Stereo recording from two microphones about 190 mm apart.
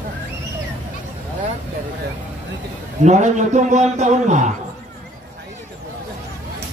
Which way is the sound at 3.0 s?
40° right (ahead or behind).